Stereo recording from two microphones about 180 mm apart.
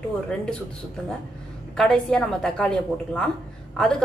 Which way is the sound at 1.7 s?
5° left (ahead or behind).